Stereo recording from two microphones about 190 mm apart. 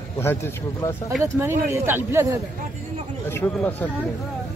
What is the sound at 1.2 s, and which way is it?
Speech, 15° right (ahead or behind).